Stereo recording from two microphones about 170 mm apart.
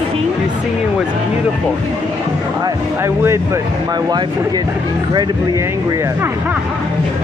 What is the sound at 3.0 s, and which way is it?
Speech, 15° right (ahead or behind).